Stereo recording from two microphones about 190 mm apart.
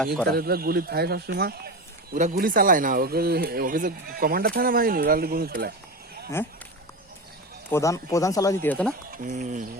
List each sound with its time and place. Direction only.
0.3 s a man's voice: 55° right (ahead or behind)
2.1 s a man's voice: 45° right (ahead or behind)
6.4 s speech: 10° left (ahead or behind)
7.7 s speech: 15° left (ahead or behind)
9.1 s speech: 40° right (ahead or behind)